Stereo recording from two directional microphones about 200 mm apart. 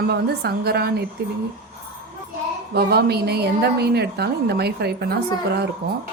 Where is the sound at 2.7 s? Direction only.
50° right (ahead or behind).